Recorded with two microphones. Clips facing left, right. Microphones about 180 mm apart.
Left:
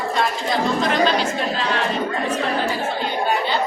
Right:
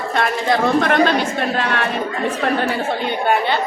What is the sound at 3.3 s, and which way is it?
Chatter, 60° right (ahead or behind).